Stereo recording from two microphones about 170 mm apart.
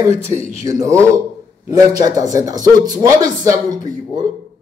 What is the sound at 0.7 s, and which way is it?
A man's voice, 20° right (ahead or behind).